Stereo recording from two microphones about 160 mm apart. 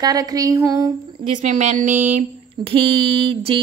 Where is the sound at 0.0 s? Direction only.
25° right (ahead or behind).